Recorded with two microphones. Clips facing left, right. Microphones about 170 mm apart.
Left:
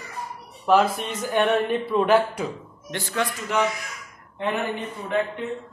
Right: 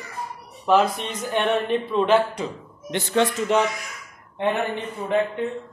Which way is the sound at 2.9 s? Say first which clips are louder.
Right 6 dB; 25° right (ahead or behind).